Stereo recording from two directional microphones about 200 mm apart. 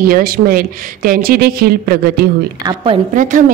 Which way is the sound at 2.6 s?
25° right (ahead or behind).